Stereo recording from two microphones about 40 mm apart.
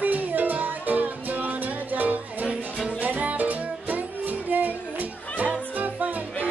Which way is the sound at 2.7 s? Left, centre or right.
Right.